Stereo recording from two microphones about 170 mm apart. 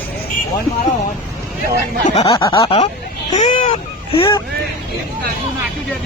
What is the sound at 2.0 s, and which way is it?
Speech, 40° left (ahead or behind).